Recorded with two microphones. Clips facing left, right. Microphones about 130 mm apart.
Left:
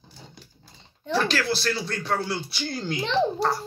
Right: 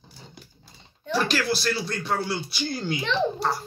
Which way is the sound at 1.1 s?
10° right (ahead or behind).